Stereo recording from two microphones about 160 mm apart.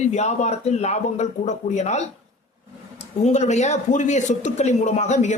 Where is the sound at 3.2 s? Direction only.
45° left (ahead or behind).